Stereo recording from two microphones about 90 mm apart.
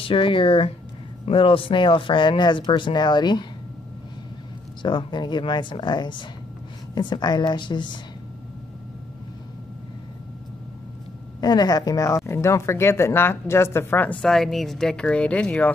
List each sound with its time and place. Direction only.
0.0 s speech: 75° left (ahead or behind); by 3.4 s 55° left (ahead or behind)
4.8 s speech: 60° left (ahead or behind)
11.4 s a woman's voice: 50° left (ahead or behind); by 14.1 s 25° left (ahead or behind)
14.2 s speech: 5° left (ahead or behind)